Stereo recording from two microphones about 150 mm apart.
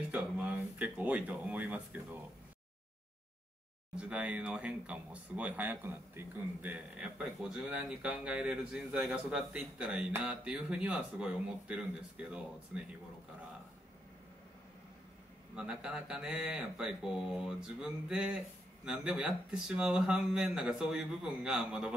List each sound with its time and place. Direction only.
0.1 s a sound: 10° right (ahead or behind)
3.9 s speech: 5° right (ahead or behind)
15.5 s speech: 5° right (ahead or behind)